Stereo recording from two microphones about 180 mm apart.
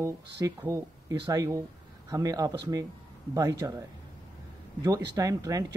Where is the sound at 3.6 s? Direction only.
20° right (ahead or behind).